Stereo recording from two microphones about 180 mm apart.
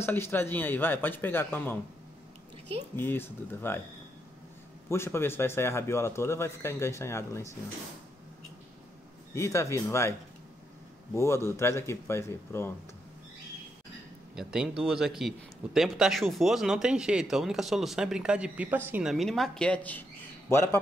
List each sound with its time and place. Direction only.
0.0 s a man's voice: 10° left (ahead or behind)
3.0 s a man's voice: 10° left (ahead or behind)
4.8 s a man's voice: 15° left (ahead or behind)
9.3 s a man's voice: 15° left (ahead or behind)
11.1 s a man's voice: 15° left (ahead or behind)
14.3 s a man's voice: 5° right (ahead or behind); by 20.8 s 15° left (ahead or behind)